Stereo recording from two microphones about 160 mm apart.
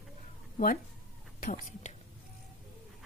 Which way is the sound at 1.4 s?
55° left (ahead or behind).